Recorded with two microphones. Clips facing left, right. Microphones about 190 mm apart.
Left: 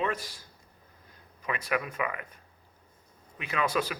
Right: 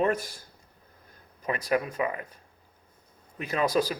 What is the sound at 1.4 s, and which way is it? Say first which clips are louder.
Speech: right 4 dB; 35° right (ahead or behind).